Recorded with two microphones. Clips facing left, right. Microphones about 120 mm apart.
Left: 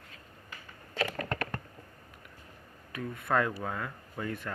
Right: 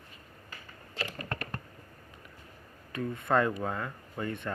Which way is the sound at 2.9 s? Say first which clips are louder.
Right 2 dB; 5° left (ahead or behind).